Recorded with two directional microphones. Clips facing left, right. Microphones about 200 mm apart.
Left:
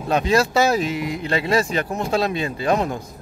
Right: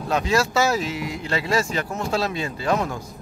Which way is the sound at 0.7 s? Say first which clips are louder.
Left 3 dB; 15° left (ahead or behind).